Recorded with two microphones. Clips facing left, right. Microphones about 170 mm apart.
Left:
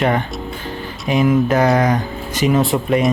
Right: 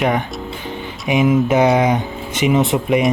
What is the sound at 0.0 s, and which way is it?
Speech, 10° right (ahead or behind).